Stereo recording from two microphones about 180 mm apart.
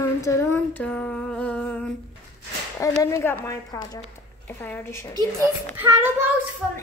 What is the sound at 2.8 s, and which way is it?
A woman's voice, 15° left (ahead or behind).